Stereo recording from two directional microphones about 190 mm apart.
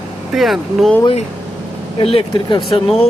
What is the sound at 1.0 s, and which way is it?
Speech, 30° left (ahead or behind).